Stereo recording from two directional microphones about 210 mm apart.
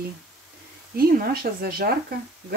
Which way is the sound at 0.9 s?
45° right (ahead or behind).